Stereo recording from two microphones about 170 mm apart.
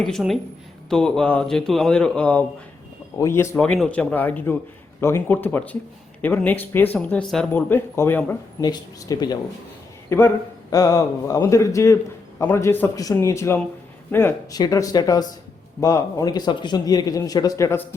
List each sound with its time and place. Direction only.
0.0 s speech: centre (ahead or behind)
8.6 s speech: 25° left (ahead or behind)